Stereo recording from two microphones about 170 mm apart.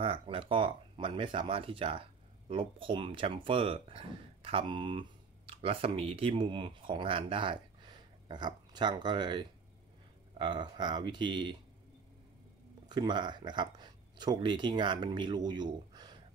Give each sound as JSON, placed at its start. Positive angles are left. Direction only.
{"t": 0.0, "sound": "speech", "side_deg": -35}
{"t": 12.8, "sound": "speech", "side_deg": -25}